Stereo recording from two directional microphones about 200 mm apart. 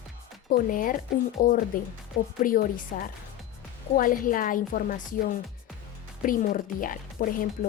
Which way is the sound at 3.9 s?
45° left (ahead or behind).